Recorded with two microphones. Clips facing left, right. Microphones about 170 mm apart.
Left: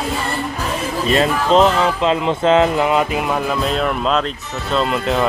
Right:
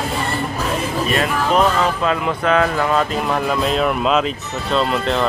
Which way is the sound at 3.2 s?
Centre (ahead or behind).